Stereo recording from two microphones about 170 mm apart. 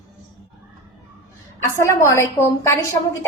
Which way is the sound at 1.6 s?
15° left (ahead or behind).